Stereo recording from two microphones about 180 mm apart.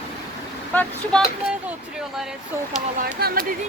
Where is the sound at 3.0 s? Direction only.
55° right (ahead or behind).